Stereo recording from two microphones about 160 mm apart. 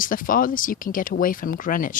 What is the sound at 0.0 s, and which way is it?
A woman's voice, 60° left (ahead or behind).